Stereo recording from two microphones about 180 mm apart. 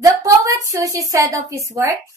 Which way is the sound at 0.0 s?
20° right (ahead or behind).